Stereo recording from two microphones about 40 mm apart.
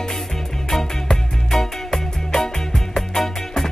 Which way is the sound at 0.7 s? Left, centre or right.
Centre.